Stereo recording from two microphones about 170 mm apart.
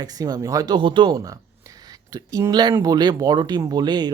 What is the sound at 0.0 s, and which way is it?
Speech, 25° right (ahead or behind).